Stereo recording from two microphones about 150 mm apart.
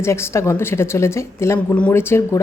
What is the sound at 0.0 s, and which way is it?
A woman's voice, 20° left (ahead or behind).